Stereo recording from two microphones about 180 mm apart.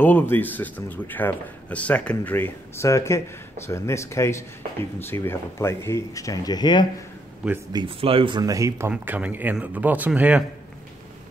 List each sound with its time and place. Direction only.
0.0 s speech: 10° left (ahead or behind)
7.7 s speech: 30° right (ahead or behind); by 10.4 s 10° right (ahead or behind)